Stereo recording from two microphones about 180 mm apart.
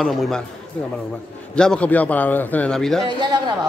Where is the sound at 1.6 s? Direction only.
5° left (ahead or behind).